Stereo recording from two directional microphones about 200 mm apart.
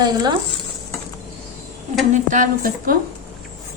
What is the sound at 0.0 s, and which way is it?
Stir, 20° right (ahead or behind).